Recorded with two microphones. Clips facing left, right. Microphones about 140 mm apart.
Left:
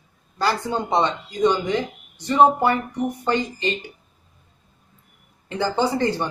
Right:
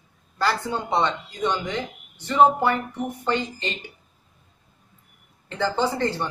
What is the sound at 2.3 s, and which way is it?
Speech, 20° left (ahead or behind).